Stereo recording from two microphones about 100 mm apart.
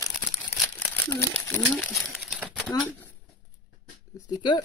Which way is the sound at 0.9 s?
20° left (ahead or behind).